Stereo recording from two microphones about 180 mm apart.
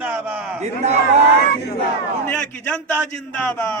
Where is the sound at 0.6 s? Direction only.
40° right (ahead or behind).